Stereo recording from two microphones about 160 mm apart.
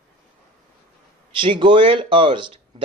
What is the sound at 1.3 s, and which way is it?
Speech, 30° right (ahead or behind).